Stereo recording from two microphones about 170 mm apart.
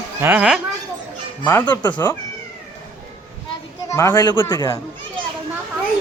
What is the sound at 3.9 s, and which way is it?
Speech, 20° left (ahead or behind).